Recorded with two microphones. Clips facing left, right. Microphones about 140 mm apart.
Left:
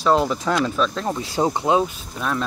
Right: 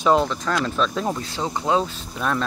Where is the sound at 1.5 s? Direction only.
25° left (ahead or behind).